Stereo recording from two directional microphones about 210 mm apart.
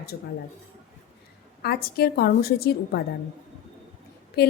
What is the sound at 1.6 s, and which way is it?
A woman's voice, 45° left (ahead or behind).